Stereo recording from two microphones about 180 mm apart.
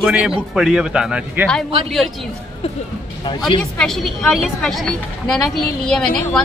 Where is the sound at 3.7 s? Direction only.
Centre (ahead or behind).